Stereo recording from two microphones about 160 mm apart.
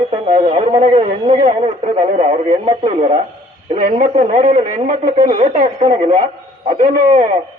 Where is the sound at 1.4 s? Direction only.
50° right (ahead or behind).